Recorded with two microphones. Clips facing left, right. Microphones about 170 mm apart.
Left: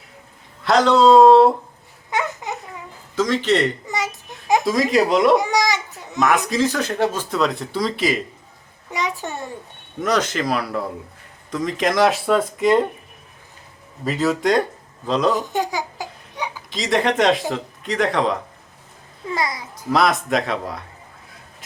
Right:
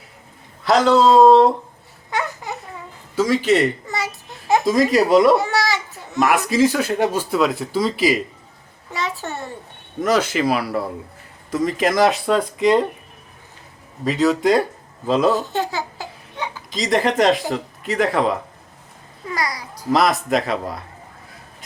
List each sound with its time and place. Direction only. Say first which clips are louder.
0.6 s a sound: even; centre (ahead or behind)
2.0 s babbling: left 1 dB; 20° left (ahead or behind)
3.2 s speech: right 2 dB; 10° right (ahead or behind)
3.8 s babbling: left 1 dB; 20° left (ahead or behind)
4.6 s speech: right 4 dB; centre (ahead or behind)
5.4 s babbling: left 1 dB; 15° left (ahead or behind)
6.1 s speech: right 2 dB; 5° right (ahead or behind)
8.9 s a child's voice: left 1 dB; 15° left (ahead or behind)
10.0 s speech: right 3 dB; 5° right (ahead or behind)
14.0 s speech: right 3 dB; centre (ahead or behind)
15.3 s babbling: right 1 dB; 15° left (ahead or behind)
16.7 s speech: right 1 dB; centre (ahead or behind)
19.3 s a child's voice: left 1 dB; 25° left (ahead or behind)
19.9 s speech: right 1 dB; centre (ahead or behind)